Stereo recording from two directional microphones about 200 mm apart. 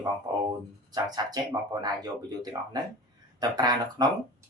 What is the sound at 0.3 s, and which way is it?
Speech, 20° right (ahead or behind).